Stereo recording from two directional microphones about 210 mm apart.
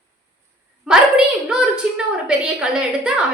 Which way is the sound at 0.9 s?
5° right (ahead or behind).